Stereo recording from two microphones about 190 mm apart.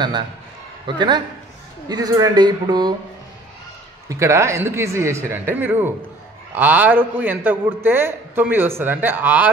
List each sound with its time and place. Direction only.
0.8 s speech: 25° right (ahead or behind)
4.1 s a man's voice: 15° right (ahead or behind)